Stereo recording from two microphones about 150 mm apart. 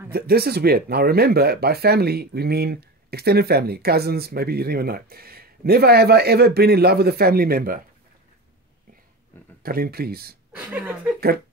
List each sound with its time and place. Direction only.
0.1 s speech: 90° right
9.6 s speech: 85° right
10.5 s a woman's voice: 10° right (ahead or behind)
11.1 s speech: 90° right